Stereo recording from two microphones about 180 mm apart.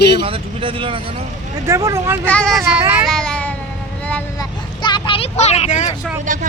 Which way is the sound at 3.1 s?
5° left (ahead or behind).